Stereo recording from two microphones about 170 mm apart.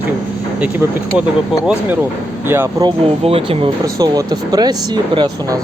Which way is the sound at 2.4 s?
15° right (ahead or behind).